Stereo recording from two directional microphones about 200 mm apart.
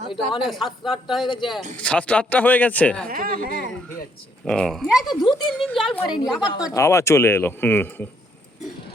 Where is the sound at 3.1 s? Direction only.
45° right (ahead or behind).